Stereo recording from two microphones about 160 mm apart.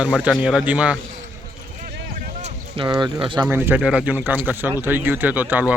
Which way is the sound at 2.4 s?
30° right (ahead or behind).